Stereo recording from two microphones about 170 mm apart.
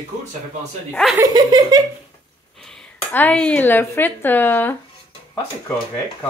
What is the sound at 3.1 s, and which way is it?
Speech, 10° left (ahead or behind).